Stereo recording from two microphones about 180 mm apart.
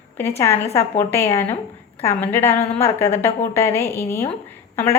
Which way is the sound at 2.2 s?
10° left (ahead or behind).